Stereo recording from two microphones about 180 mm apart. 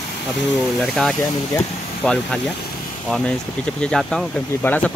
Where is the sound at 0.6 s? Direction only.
Centre (ahead or behind).